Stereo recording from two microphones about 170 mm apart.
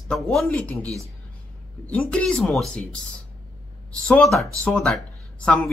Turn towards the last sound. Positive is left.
turn(degrees=5)  # may be behind; listen again after turning